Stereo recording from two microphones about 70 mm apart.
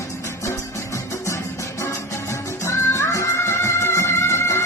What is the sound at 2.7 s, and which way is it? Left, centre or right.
Music, left.